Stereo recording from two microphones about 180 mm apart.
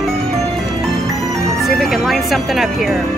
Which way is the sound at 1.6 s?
Centre (ahead or behind).